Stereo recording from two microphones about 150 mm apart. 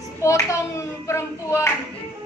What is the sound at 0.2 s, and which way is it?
A child's voice, 20° left (ahead or behind).